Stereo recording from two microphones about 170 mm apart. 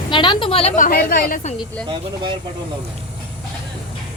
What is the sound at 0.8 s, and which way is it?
Speech, 60° left (ahead or behind).